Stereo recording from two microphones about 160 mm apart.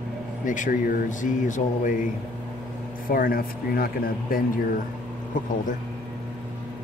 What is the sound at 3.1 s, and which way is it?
Speech, 65° left (ahead or behind).